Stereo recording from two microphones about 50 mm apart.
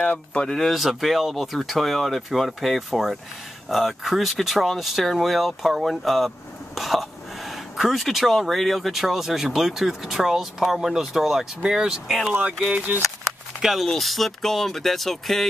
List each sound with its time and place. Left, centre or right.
0.0 s speech: left
0.6 s speech: centre
12.1 s speech: centre
12.7 s speech: right
13.6 s speech: centre